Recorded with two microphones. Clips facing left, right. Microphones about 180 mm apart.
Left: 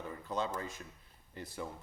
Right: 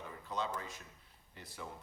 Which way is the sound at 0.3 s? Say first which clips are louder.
Left 3 dB; 45° left (ahead or behind).